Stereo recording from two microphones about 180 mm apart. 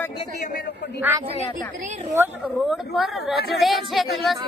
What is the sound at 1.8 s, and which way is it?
Speech, 40° right (ahead or behind).